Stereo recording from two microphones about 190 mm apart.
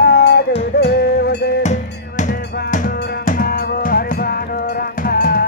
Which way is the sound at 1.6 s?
40° left (ahead or behind).